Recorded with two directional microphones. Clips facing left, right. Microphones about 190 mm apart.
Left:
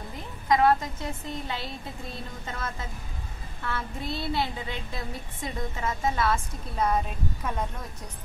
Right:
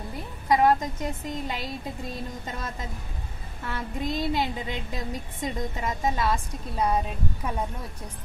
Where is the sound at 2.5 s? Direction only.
15° right (ahead or behind).